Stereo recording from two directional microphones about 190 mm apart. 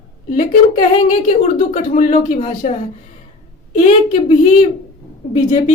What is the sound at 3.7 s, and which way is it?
Speech, 40° left (ahead or behind).